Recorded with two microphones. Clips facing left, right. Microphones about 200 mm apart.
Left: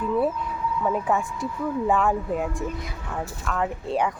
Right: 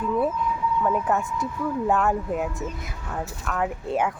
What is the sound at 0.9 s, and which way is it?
Speech, centre (ahead or behind).